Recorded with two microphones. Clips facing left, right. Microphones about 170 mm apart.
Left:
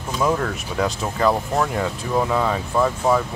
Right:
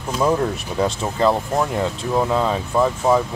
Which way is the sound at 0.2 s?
20° right (ahead or behind).